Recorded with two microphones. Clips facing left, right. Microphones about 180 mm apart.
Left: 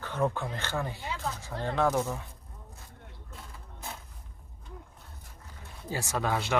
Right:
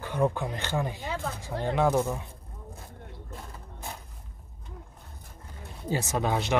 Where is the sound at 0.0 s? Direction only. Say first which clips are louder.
Right 3 dB; 15° right (ahead or behind).